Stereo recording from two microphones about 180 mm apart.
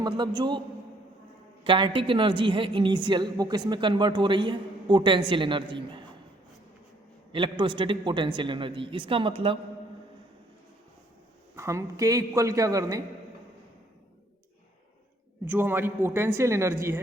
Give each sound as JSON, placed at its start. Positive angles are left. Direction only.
{"t": 0.0, "sound": "a woman's voice", "side_deg": -25}
{"t": 1.6, "sound": "a woman's voice", "side_deg": -30}
{"t": 7.3, "sound": "a woman's voice", "side_deg": -25}
{"t": 11.5, "sound": "a man's voice", "side_deg": -15}
{"t": 15.4, "sound": "a man's voice", "side_deg": -10}